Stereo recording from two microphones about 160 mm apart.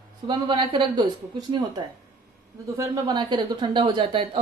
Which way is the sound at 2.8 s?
25° right (ahead or behind).